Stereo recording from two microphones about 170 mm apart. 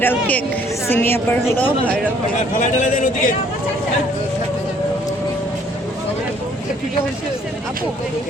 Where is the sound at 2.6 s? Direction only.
45° left (ahead or behind).